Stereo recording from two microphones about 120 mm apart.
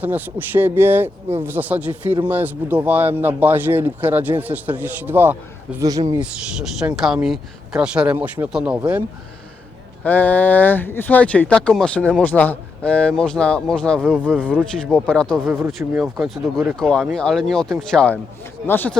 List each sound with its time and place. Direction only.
0.0 s speech: 15° right (ahead or behind)
5.8 s speech: 30° right (ahead or behind)
6.1 s speech: 10° right (ahead or behind)
8.1 s speech: 20° right (ahead or behind)
8.5 s speech: 10° right (ahead or behind)
10.0 s speech: 15° left (ahead or behind)
14.3 s speech: 10° right (ahead or behind)
14.6 s speech: 5° left (ahead or behind)
15.6 s speech: 20° right (ahead or behind)
16.0 s speech: 5° right (ahead or behind); by 18.9 s 15° left (ahead or behind)